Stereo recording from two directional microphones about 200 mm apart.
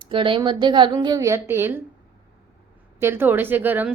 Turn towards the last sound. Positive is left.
turn(degrees=-10)  # may be behind; listen again after turning